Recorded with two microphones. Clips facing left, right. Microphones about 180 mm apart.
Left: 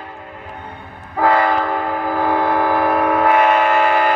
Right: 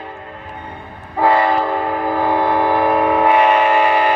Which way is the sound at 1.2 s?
15° right (ahead or behind).